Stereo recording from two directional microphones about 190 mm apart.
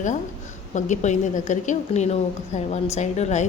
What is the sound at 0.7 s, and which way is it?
Speech, 40° left (ahead or behind).